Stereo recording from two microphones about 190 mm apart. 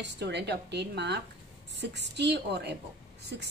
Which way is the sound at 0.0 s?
65° right (ahead or behind).